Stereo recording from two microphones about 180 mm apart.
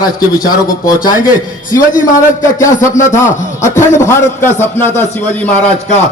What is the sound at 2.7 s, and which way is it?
A man's voice, 45° left (ahead or behind).